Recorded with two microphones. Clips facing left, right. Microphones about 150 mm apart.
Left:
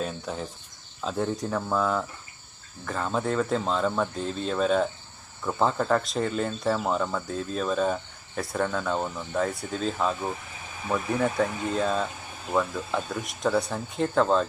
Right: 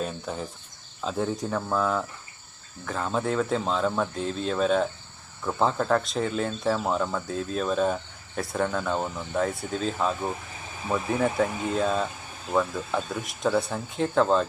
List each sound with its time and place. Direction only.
0.0 s speech: centre (ahead or behind)